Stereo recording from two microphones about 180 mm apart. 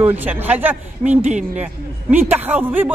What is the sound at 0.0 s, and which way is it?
Speech, 10° right (ahead or behind).